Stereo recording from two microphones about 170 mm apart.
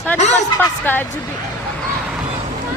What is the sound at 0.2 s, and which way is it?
Speech, 40° left (ahead or behind).